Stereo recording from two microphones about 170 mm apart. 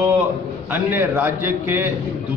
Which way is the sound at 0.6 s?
10° right (ahead or behind).